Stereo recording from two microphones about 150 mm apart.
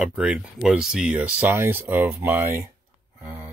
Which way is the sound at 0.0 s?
5° right (ahead or behind).